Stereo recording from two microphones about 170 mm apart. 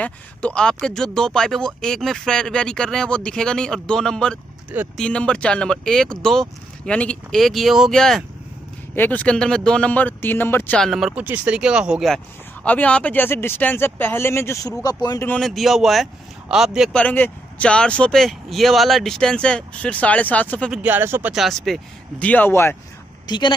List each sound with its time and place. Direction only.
0.0 s speech: 5° left (ahead or behind)
10.9 s speech: centre (ahead or behind)
12.6 s speech: 10° left (ahead or behind)
15.2 s speech: 5° left (ahead or behind)
16.9 s speech: 10° left (ahead or behind)
20.7 s speech: 10° right (ahead or behind); by 22.8 s 15° left (ahead or behind)
23.2 s speech: 25° left (ahead or behind)